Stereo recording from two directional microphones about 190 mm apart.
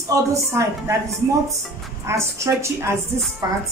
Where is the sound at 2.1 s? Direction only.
15° right (ahead or behind).